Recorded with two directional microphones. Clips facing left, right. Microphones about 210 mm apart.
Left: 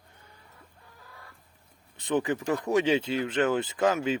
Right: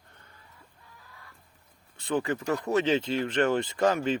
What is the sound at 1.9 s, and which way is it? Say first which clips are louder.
Speech: left 1 dB; 20° left (ahead or behind).